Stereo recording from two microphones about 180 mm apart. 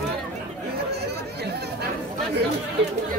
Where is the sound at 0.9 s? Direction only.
65° right (ahead or behind).